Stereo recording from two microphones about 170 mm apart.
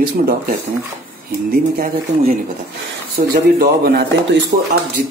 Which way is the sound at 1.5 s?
60° right (ahead or behind).